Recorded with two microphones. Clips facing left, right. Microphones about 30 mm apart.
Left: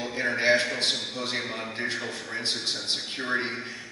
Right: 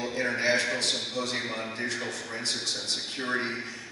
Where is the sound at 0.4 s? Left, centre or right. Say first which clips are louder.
Left 4 dB; left.